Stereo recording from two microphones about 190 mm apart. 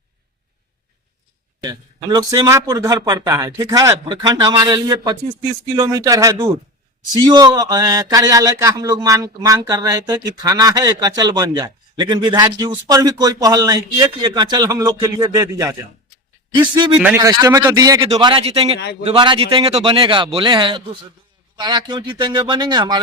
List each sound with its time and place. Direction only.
1.6 s speech: 20° right (ahead or behind)
17.2 s speech: 20° right (ahead or behind)